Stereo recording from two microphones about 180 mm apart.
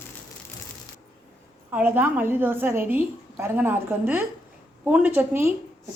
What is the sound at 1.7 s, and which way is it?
A woman's voice, 10° right (ahead or behind).